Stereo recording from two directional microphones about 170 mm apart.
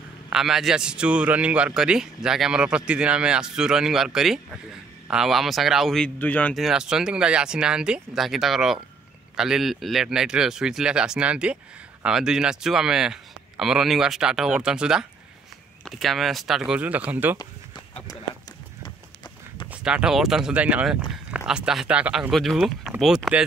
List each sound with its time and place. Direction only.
0.3 s a man's voice: centre (ahead or behind)
17.4 s a sound: 25° left (ahead or behind)
19.7 s a man's voice: 5° right (ahead or behind)